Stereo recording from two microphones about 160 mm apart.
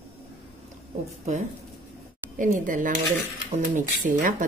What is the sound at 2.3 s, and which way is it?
A woman's voice, 55° right (ahead or behind).